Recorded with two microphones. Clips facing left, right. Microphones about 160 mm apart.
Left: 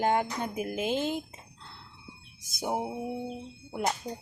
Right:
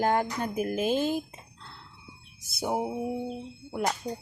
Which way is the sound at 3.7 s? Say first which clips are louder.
Right 1 dB; 20° left (ahead or behind).